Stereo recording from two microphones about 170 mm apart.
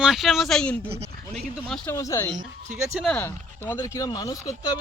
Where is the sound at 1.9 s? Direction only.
15° left (ahead or behind).